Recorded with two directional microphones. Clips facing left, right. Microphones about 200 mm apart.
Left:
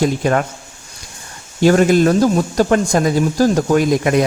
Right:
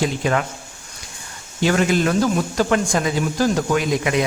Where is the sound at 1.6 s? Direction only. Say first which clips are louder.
Left 7 dB; 40° left (ahead or behind).